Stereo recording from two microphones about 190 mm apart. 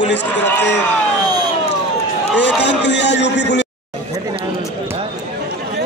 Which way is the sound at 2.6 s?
65° left (ahead or behind).